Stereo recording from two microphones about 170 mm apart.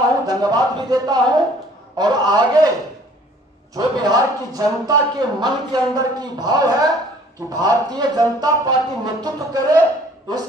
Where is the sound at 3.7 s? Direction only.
20° right (ahead or behind).